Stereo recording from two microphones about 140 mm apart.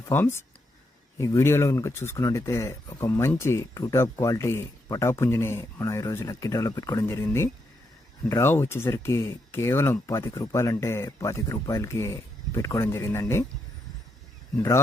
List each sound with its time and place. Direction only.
0.1 s speech: 15° left (ahead or behind)